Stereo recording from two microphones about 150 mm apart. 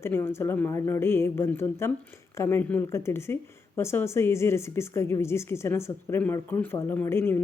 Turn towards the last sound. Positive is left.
turn(degrees=15)  # may be behind; listen again after turning